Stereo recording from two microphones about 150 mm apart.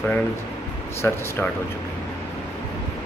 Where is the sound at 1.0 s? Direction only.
15° left (ahead or behind).